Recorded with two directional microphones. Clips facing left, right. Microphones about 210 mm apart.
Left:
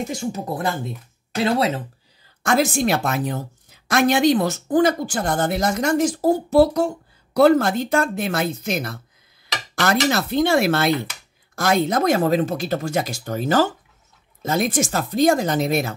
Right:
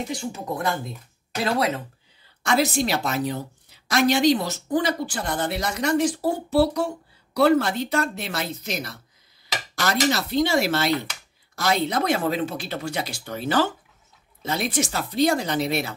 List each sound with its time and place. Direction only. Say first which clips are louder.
0.0 s speech: left 4 dB; 40° left (ahead or behind); by 1.8 s 25° left (ahead or behind)
2.4 s a woman's voice: left 3 dB; 50° left (ahead or behind)